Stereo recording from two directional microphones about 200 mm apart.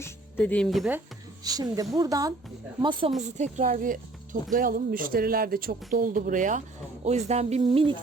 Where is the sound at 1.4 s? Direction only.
20° right (ahead or behind).